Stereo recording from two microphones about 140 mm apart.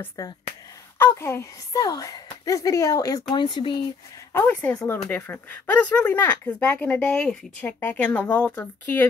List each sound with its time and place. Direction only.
0.2 s speech: 25° left (ahead or behind)
4.3 s speech: 15° left (ahead or behind)